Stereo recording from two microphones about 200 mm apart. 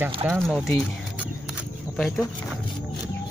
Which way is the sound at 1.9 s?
Centre (ahead or behind).